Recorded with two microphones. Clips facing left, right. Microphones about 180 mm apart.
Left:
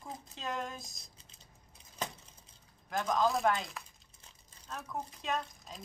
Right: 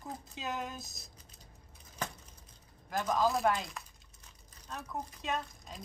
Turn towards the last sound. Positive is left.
turn(degrees=0)  # may be behind; listen again after turning